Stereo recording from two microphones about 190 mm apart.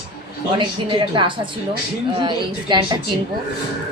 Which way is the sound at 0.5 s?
25° right (ahead or behind).